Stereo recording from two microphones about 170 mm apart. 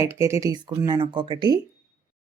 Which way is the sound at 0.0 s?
15° right (ahead or behind).